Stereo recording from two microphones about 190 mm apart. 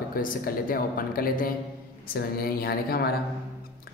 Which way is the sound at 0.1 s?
50° left (ahead or behind).